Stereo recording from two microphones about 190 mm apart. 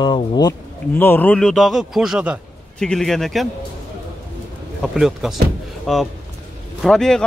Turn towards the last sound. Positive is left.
turn(degrees=5)  # may be behind; listen again after turning